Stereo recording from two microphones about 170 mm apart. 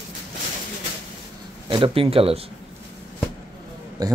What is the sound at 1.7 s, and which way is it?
Speech, 30° right (ahead or behind).